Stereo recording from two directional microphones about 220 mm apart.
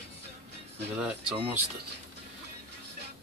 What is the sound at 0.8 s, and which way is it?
Speech, 10° right (ahead or behind).